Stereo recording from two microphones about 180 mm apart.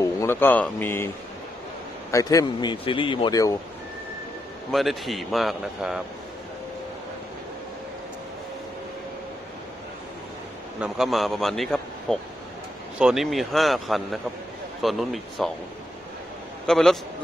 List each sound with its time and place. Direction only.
0.0 s a man's voice: 15° left (ahead or behind)
4.6 s a man's voice: centre (ahead or behind)
10.8 s a man's voice: centre (ahead or behind)
16.6 s a man's voice: centre (ahead or behind)